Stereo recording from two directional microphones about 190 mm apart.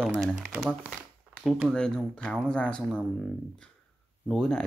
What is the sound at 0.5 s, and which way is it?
Speech, 10° right (ahead or behind).